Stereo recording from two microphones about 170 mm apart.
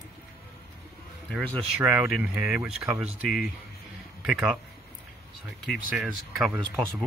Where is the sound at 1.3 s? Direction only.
5° left (ahead or behind).